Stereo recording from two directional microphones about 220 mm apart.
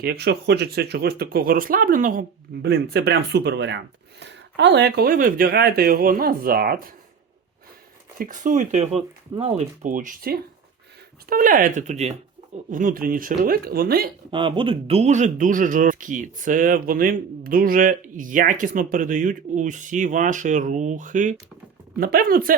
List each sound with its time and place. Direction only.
0.0 s speech: 45° right (ahead or behind)
8.2 s speech: 35° right (ahead or behind)
14.3 s speech: 20° right (ahead or behind); by 22.5 s 40° right (ahead or behind)